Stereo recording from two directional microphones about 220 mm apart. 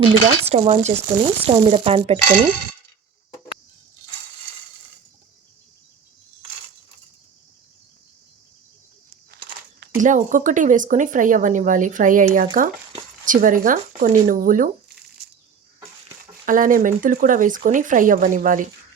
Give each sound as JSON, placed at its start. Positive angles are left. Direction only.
{"t": 0.0, "sound": "speech", "side_deg": -25}
{"t": 10.0, "sound": "speech", "side_deg": -35}
{"t": 16.5, "sound": "speech", "side_deg": -40}